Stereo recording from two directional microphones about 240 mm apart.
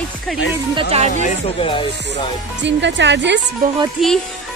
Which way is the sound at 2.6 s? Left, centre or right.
Right.